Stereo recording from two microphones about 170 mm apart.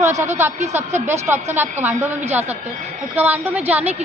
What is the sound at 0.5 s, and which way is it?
Speech, 40° right (ahead or behind).